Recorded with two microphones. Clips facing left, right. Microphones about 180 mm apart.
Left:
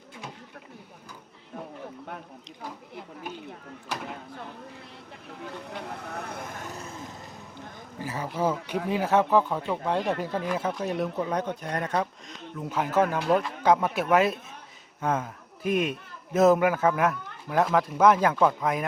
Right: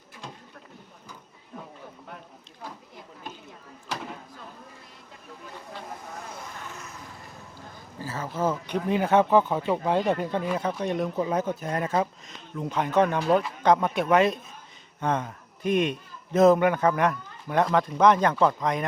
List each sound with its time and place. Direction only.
5.4 s vehicle: 70° left (ahead or behind); by 7.2 s 25° left (ahead or behind)
7.9 s a man's voice: 15° left (ahead or behind)